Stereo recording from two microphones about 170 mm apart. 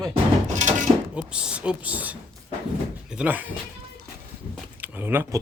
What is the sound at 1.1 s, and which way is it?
Speech, 5° right (ahead or behind).